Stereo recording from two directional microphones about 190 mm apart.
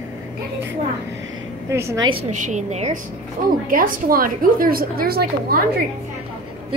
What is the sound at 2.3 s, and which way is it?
Speech, 40° right (ahead or behind).